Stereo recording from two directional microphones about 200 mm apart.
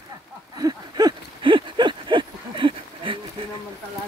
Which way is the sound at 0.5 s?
20° right (ahead or behind).